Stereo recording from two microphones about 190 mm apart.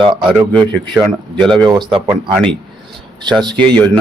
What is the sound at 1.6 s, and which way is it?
Speech, 25° right (ahead or behind).